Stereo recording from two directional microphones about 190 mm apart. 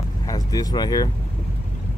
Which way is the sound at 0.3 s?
20° left (ahead or behind).